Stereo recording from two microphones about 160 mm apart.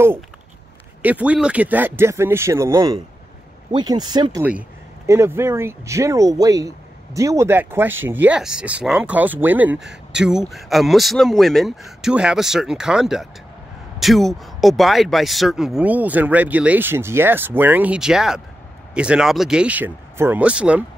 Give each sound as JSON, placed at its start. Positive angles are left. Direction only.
{"t": 1.0, "sound": "speech", "side_deg": -10}
{"t": 4.4, "sound": "speech", "side_deg": -10}